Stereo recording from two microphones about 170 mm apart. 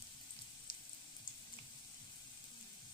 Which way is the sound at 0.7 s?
30° left (ahead or behind).